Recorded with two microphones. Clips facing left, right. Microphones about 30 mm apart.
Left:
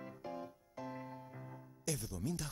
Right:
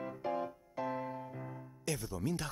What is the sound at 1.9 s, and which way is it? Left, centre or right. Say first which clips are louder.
Speech: right 4 dB; right.